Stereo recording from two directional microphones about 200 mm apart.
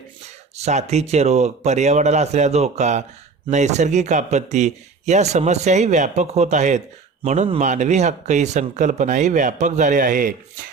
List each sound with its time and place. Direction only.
0.5 s speech: 35° right (ahead or behind)